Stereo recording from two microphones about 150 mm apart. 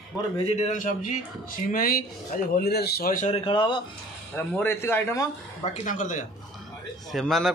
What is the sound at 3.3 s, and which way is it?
Speech, 35° left (ahead or behind).